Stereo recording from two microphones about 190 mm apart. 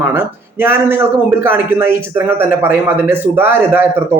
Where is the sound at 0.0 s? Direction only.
10° right (ahead or behind).